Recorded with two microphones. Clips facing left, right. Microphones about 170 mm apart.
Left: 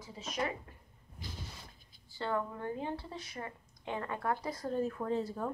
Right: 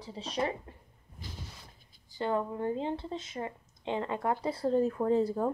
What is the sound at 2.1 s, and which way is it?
A woman's voice, 20° right (ahead or behind).